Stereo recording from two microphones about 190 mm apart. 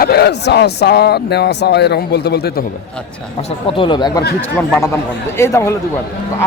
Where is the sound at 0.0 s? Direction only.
55° left (ahead or behind).